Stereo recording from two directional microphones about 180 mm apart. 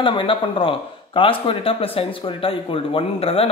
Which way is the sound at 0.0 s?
30° left (ahead or behind).